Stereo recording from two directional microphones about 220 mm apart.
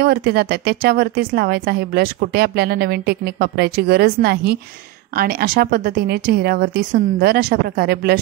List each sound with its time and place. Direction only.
0.0 s a woman's voice: 45° right (ahead or behind)